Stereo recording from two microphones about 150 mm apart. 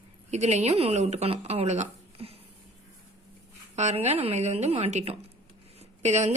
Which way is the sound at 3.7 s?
50° right (ahead or behind).